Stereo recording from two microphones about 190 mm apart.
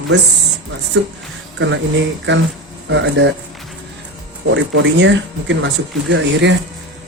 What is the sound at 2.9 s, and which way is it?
Speech, 70° right (ahead or behind).